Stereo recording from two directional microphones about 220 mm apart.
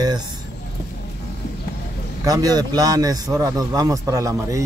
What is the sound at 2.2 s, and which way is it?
A man's voice, 15° right (ahead or behind).